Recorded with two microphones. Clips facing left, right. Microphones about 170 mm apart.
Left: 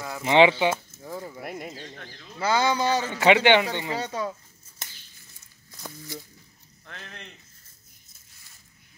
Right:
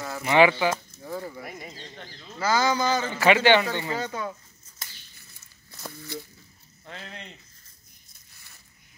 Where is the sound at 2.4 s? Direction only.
30° left (ahead or behind).